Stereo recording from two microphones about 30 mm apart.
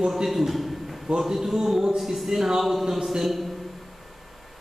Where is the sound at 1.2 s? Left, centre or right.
Centre.